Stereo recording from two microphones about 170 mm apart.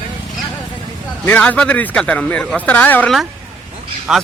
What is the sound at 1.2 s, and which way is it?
Speech, 10° left (ahead or behind).